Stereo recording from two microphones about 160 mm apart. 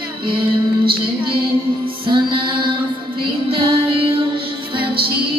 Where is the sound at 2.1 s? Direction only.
30° right (ahead or behind).